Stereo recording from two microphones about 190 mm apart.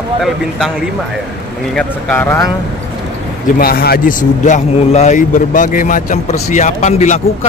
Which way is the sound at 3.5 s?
55° left (ahead or behind).